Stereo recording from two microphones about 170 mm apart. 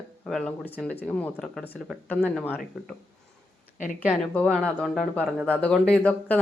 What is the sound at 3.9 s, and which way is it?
Speech, 5° left (ahead or behind).